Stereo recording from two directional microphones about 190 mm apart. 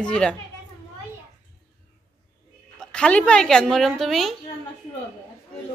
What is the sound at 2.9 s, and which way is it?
A woman's voice, 5° left (ahead or behind).